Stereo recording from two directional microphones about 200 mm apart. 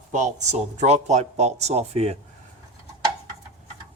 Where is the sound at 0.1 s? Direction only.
35° right (ahead or behind).